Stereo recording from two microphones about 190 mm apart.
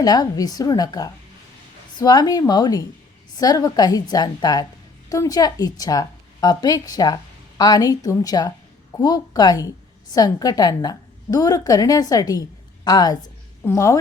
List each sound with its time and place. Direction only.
0.0 s a woman's voice: 20° left (ahead or behind)